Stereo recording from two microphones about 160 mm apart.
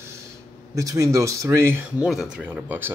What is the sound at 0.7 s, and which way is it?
Speech, 20° right (ahead or behind).